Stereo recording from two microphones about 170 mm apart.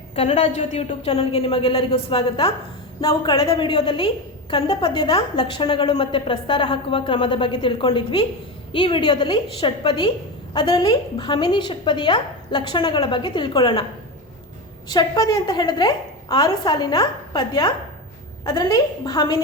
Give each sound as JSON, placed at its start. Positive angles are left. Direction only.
{"t": 0.2, "sound": "a woman's voice", "side_deg": 40}
{"t": 14.8, "sound": "a woman's voice", "side_deg": 25}